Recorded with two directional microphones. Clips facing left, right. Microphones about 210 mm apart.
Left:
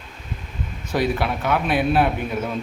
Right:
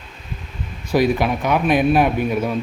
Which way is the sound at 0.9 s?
15° right (ahead or behind).